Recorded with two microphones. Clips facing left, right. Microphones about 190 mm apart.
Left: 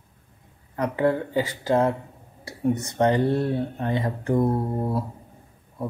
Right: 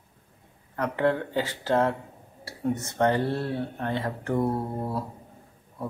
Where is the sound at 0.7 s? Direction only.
10° left (ahead or behind).